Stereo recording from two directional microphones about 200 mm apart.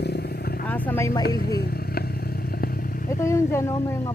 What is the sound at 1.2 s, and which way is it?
Vehicle, 50° left (ahead or behind).